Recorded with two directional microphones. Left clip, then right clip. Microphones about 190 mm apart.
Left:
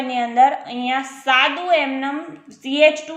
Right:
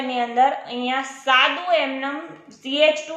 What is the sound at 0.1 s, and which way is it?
A woman's voice, 25° left (ahead or behind).